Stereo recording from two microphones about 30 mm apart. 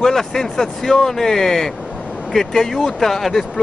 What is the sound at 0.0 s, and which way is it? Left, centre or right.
Speech, centre.